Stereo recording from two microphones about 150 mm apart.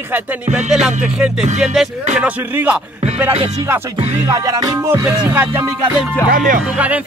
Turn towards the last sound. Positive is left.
turn(degrees=-10)  # may be behind; listen again after turning